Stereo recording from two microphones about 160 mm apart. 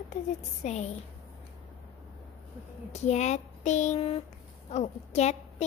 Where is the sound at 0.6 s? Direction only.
45° left (ahead or behind).